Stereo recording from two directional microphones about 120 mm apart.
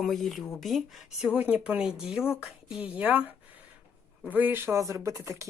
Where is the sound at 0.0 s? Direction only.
Centre (ahead or behind).